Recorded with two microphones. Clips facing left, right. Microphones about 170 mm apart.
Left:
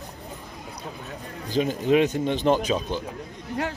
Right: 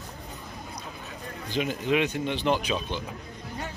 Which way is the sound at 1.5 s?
40° left (ahead or behind).